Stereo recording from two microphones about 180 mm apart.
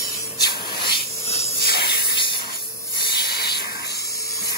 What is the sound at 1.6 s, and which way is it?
Spray, 60° left (ahead or behind).